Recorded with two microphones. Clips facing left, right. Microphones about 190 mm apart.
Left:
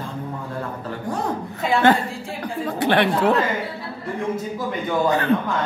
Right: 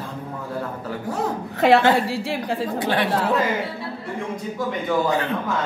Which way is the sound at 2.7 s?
65° left (ahead or behind).